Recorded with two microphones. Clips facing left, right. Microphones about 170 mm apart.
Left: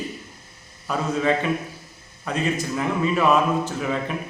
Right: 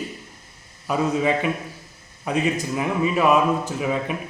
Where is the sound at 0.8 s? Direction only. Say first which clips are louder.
Right 1 dB; 15° right (ahead or behind).